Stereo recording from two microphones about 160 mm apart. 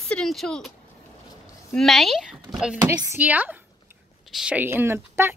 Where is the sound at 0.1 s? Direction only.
Centre (ahead or behind).